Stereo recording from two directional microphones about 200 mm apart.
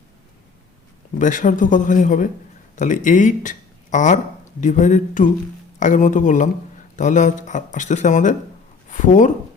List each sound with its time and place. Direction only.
1.2 s speech: 40° left (ahead or behind)